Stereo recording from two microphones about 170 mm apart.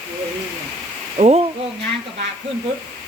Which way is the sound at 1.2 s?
35° right (ahead or behind).